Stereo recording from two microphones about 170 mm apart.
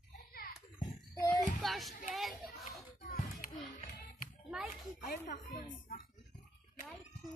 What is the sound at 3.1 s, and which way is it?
Children playing, 50° left (ahead or behind).